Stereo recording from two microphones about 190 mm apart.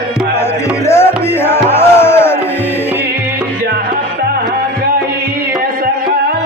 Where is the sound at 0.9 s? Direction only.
15° left (ahead or behind).